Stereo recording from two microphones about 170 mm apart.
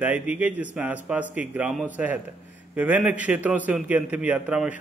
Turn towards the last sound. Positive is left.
turn(degrees=-10)  # may be behind; listen again after turning